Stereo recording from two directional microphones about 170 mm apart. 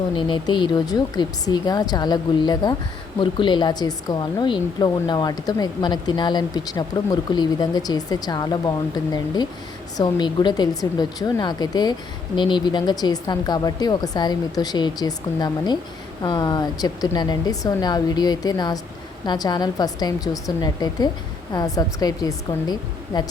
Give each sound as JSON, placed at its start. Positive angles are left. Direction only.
{"t": 0.2, "sound": "speech", "side_deg": 30}